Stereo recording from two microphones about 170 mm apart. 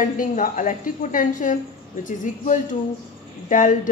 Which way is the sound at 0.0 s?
50° left (ahead or behind).